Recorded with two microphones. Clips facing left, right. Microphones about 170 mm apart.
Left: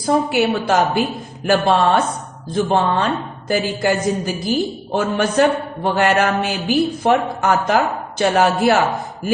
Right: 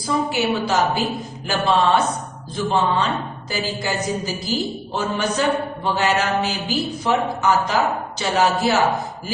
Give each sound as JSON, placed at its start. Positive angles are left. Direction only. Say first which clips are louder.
{"t": 0.0, "sound": "a woman's voice", "louder": "left 5 dB", "side_deg": 55}